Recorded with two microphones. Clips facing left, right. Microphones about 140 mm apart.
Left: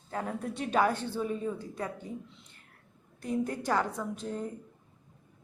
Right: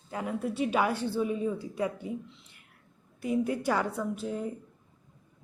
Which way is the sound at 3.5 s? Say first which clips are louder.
Right 2 dB; 10° right (ahead or behind).